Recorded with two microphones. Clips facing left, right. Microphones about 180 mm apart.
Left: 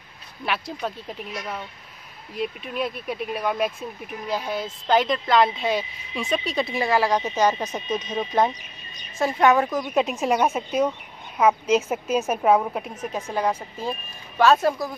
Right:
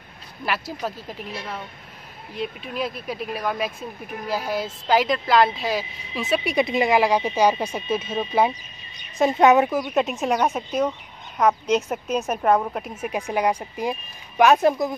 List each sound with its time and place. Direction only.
0.5 s a woman's voice: 5° right (ahead or behind)
2.3 s a woman's voice: centre (ahead or behind)
9.2 s a woman's voice: 20° right (ahead or behind)
9.7 s a woman's voice: 5° right (ahead or behind)
13.0 s speech: 15° right (ahead or behind)